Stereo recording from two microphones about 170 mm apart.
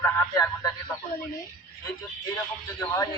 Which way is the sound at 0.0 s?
15° left (ahead or behind).